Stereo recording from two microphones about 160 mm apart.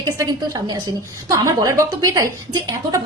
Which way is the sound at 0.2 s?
25° right (ahead or behind).